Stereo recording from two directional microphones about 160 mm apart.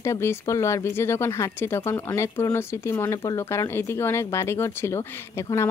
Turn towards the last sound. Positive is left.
turn(degrees=15)  # may be behind; listen again after turning